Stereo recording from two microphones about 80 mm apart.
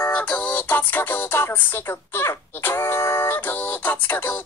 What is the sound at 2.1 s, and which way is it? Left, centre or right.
Speech, left.